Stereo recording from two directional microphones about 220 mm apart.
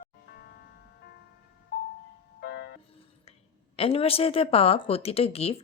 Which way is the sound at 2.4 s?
50° left (ahead or behind).